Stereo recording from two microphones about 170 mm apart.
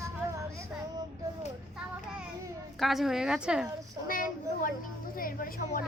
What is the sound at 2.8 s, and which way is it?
Speech, centre (ahead or behind).